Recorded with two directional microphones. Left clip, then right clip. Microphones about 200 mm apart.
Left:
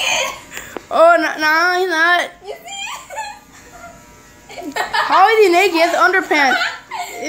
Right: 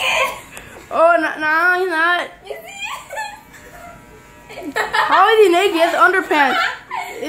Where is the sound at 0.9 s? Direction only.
15° left (ahead or behind).